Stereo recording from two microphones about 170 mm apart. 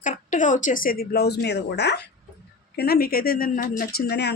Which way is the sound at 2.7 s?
65° left (ahead or behind).